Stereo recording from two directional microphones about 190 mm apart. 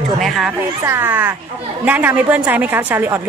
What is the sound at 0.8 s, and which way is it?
A woman's voice, 10° right (ahead or behind).